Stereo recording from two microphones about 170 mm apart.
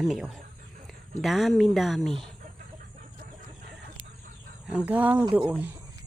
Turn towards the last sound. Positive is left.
turn(degrees=-10)  # may be behind; listen again after turning